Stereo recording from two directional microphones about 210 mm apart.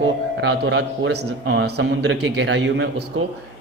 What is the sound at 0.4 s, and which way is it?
A man's voice, 65° right (ahead or behind).